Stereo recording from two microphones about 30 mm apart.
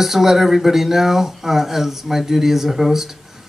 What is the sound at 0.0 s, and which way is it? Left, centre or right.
Speech, centre.